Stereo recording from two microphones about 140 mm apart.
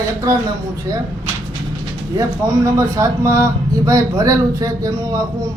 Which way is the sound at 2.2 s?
25° right (ahead or behind).